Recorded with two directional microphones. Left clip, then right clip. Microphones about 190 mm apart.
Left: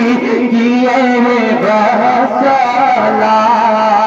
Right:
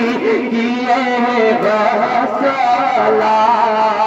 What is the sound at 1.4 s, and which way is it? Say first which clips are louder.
Music: left 2 dB; 20° right (ahead or behind).